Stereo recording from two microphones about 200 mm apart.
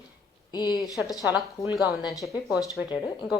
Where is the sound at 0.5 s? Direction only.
20° left (ahead or behind).